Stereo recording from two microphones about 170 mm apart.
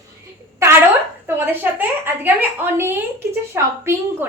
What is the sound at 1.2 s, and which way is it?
A woman's voice, 10° right (ahead or behind).